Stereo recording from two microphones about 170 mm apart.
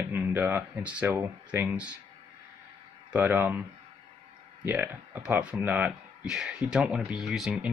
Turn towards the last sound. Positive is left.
turn(degrees=0)  # may be behind; listen again after turning